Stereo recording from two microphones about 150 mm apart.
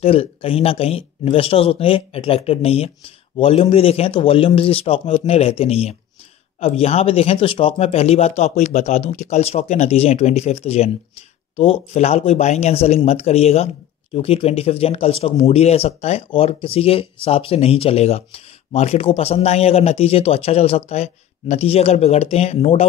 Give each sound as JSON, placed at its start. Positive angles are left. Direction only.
{"t": 0.0, "sound": "speech", "side_deg": 40}